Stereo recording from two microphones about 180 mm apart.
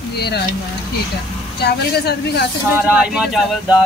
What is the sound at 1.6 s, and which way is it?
Speech, 65° left (ahead or behind).